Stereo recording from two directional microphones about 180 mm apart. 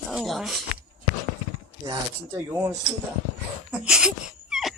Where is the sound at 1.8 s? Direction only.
15° right (ahead or behind).